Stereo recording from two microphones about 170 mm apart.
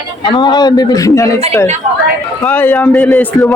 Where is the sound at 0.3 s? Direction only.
25° left (ahead or behind).